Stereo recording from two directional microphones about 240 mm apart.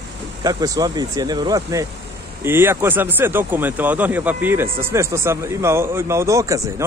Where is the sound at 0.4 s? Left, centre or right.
Centre.